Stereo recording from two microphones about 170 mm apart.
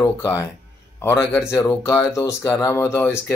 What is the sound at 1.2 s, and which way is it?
Speech, 10° left (ahead or behind).